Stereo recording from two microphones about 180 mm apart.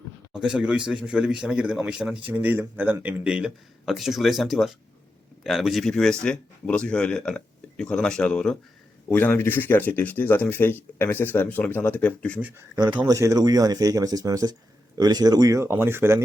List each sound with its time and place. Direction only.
0.3 s a man's voice: 5° right (ahead or behind)
12.4 s speech: 10° right (ahead or behind)
12.7 s speech: 25° right (ahead or behind)